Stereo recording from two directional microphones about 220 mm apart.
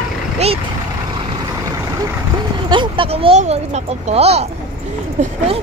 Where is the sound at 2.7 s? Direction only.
20° right (ahead or behind).